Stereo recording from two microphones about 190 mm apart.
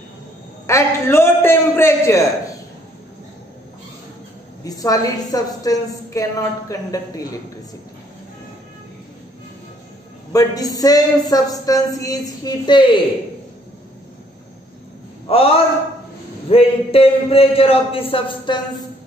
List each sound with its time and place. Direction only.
0.7 s a man's voice: 15° left (ahead or behind)
4.6 s a man's voice: 20° left (ahead or behind)
10.3 s speech: 20° left (ahead or behind)
15.2 s a man's voice: 30° left (ahead or behind)